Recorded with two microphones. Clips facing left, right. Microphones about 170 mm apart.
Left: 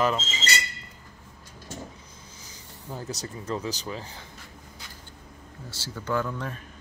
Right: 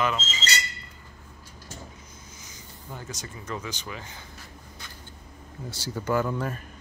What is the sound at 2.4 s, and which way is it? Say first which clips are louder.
Speech: left 3 dB; 35° left (ahead or behind).